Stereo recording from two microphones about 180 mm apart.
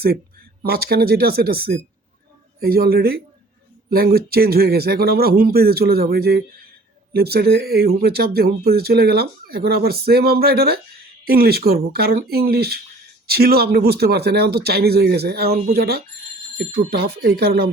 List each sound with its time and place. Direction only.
0.6 s speech: 55° right (ahead or behind)